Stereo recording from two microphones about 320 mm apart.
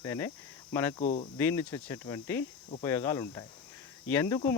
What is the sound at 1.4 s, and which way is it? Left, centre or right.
Speech, centre.